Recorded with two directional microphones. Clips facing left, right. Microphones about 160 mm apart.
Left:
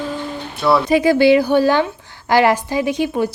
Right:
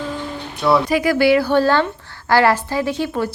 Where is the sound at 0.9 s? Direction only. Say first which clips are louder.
Left 3 dB; 25° left (ahead or behind).